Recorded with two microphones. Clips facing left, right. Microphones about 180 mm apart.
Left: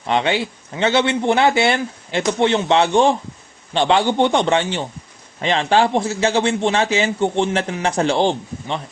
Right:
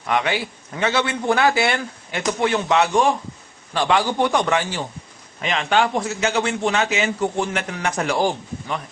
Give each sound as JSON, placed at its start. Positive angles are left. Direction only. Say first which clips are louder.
{"t": 0.1, "sound": "a man's voice", "louder": "left 3 dB", "side_deg": 25}